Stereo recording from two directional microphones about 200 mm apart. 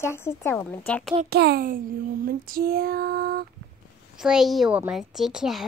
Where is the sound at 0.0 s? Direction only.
15° left (ahead or behind).